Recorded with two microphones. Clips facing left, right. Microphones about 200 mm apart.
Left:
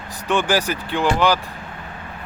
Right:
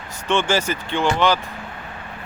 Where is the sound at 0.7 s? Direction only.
5° left (ahead or behind).